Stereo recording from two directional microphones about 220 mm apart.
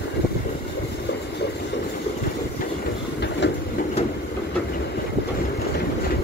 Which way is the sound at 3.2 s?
50° left (ahead or behind).